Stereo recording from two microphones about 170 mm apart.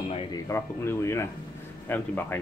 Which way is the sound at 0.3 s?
15° left (ahead or behind).